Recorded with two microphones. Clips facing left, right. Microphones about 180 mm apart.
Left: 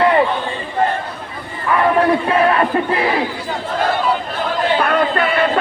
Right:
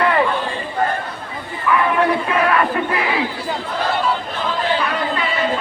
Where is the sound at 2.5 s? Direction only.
30° left (ahead or behind).